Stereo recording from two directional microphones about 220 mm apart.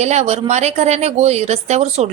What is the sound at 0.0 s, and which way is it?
A woman's voice, 30° right (ahead or behind).